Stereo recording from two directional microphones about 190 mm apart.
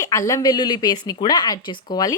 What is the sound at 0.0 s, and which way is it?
Speech, 15° left (ahead or behind).